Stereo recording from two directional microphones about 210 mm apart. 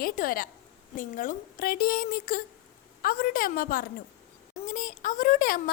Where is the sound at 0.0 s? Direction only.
40° left (ahead or behind).